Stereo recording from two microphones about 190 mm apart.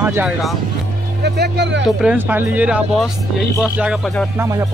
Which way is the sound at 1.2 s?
60° right (ahead or behind).